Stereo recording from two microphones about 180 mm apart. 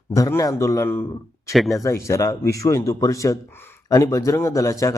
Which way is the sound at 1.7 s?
15° left (ahead or behind).